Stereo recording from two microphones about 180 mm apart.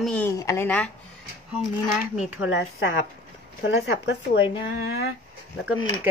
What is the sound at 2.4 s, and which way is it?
Speech, 65° left (ahead or behind).